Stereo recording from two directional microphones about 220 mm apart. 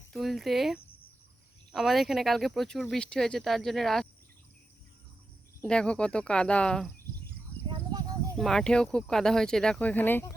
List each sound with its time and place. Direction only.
0.1 s speech: centre (ahead or behind)
5.6 s speech: 5° left (ahead or behind)
7.7 s a sound: 20° right (ahead or behind)
8.4 s speech: centre (ahead or behind)